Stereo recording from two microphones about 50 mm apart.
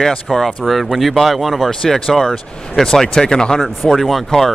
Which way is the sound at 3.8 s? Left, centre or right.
Centre.